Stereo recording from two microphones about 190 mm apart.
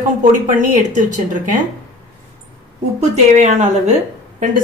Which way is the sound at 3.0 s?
40° right (ahead or behind).